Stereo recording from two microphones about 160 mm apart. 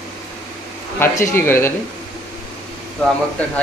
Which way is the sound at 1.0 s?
15° left (ahead or behind).